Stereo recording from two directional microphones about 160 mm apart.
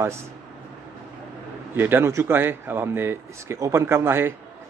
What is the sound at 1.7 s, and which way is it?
Speech, 15° right (ahead or behind).